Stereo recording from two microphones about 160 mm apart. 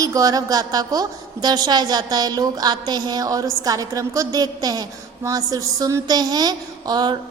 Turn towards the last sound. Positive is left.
turn(degrees=-25)  # may be behind; listen again after turning